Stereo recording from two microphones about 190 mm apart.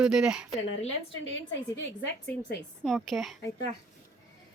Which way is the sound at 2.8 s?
Centre (ahead or behind).